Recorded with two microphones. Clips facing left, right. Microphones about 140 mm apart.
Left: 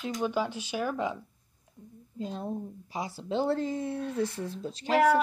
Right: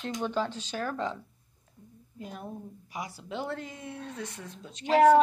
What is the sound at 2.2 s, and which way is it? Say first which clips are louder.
Speech: left 6 dB; 25° left (ahead or behind).